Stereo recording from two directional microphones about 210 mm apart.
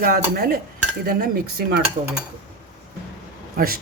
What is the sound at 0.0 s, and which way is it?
Speech, 45° right (ahead or behind).